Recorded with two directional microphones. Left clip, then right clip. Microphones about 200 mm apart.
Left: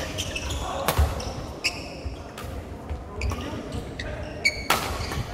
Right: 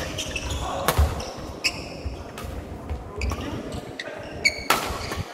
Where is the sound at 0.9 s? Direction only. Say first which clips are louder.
Right 2 dB; 15° right (ahead or behind).